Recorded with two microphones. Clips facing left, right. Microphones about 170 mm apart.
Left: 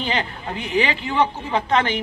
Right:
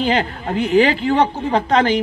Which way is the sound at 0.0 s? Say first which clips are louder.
Right 7 dB; 40° right (ahead or behind).